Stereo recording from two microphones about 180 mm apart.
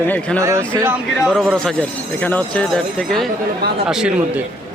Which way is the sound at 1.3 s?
Centre (ahead or behind).